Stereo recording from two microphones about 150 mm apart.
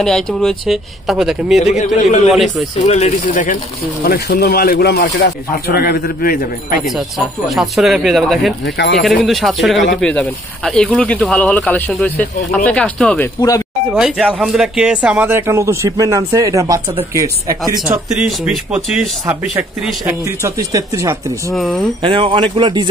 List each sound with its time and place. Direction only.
0.0 s speech: 5° left (ahead or behind)
1.7 s speech: 50° left (ahead or behind)
2.3 s speech: centre (ahead or behind)
2.8 s speech: 50° left (ahead or behind)
4.0 s a man's voice: 75° left (ahead or behind)
6.9 s speech: centre (ahead or behind)
13.9 s speech: 5° right (ahead or behind); by 17.8 s 20° right (ahead or behind)
17.8 s speech: 5° right (ahead or behind)
20.1 s speech: 15° right (ahead or behind)
21.5 s speech: centre (ahead or behind)
22.0 s speech: 35° right (ahead or behind)